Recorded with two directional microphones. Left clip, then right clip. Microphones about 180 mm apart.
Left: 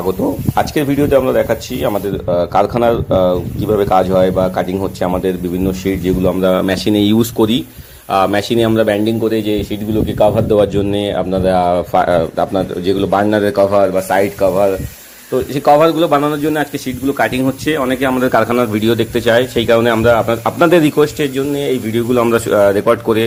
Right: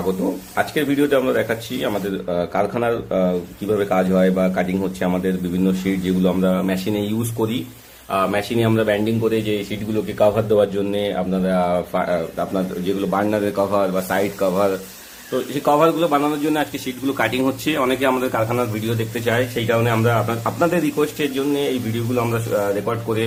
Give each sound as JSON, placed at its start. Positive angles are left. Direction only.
{"t": 0.5, "sound": "speech", "side_deg": 30}
{"t": 6.4, "sound": "a man's voice", "side_deg": 55}
{"t": 15.6, "sound": "speech", "side_deg": 35}
{"t": 18.2, "sound": "a man's voice", "side_deg": 45}
{"t": 21.2, "sound": "speech", "side_deg": 30}
{"t": 22.1, "sound": "a man's voice", "side_deg": 45}